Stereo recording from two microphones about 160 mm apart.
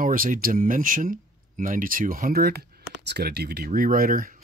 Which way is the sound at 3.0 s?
90° right.